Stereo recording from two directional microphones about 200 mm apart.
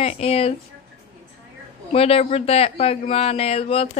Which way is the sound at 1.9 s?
30° left (ahead or behind).